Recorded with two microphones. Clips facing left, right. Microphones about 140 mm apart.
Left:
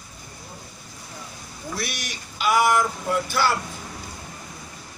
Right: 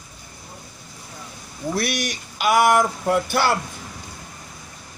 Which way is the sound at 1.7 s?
55° right (ahead or behind).